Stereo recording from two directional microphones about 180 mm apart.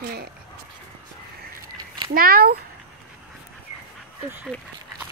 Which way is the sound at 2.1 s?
55° right (ahead or behind).